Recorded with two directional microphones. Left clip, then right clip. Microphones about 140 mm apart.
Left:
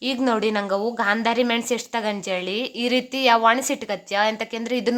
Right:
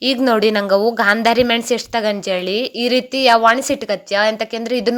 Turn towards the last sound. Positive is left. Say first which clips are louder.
# right 6 dB
turn(degrees=-25)  # may be behind; listen again after turning